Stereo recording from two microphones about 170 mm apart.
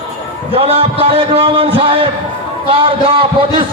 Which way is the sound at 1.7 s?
30° right (ahead or behind).